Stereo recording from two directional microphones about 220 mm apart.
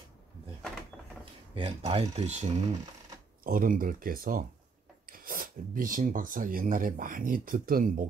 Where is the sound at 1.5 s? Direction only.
25° right (ahead or behind).